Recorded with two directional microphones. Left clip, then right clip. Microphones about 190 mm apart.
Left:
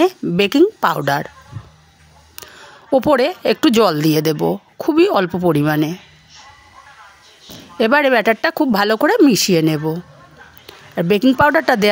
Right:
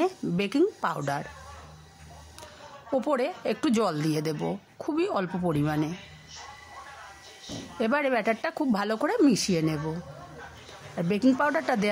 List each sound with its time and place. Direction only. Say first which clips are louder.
0.0 s a woman's voice: left 12 dB; 40° left (ahead or behind)
2.9 s a woman's voice: left 13 dB; 40° left (ahead or behind)
7.7 s a woman's voice: left 13 dB; 40° left (ahead or behind)
11.0 s a woman's voice: left 12 dB; 45° left (ahead or behind)